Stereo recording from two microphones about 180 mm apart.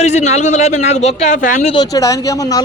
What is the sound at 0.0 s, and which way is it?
A man's voice, 40° left (ahead or behind).